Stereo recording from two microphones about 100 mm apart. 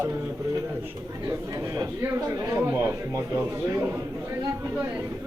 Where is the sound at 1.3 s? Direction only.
30° right (ahead or behind).